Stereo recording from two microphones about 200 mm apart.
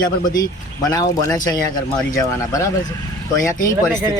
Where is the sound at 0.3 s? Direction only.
20° left (ahead or behind).